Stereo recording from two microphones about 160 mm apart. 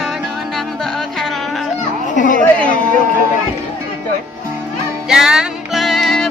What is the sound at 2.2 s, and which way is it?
Chatter, 55° left (ahead or behind).